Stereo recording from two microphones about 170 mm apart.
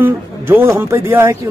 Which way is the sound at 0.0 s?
10° right (ahead or behind).